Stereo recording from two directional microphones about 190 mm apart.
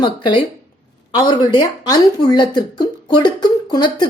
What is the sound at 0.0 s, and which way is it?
Speech, 25° left (ahead or behind).